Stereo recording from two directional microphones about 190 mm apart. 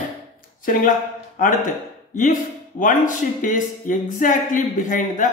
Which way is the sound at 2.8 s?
40° left (ahead or behind).